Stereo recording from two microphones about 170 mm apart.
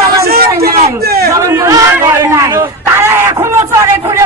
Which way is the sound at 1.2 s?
15° right (ahead or behind).